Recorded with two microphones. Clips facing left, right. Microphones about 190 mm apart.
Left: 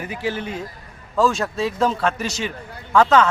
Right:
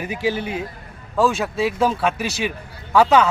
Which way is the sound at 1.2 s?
Centre (ahead or behind).